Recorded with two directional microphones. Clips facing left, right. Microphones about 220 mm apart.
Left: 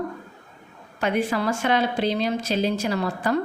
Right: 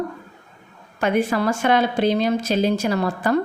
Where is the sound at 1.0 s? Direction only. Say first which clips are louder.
Right 3 dB; 50° right (ahead or behind).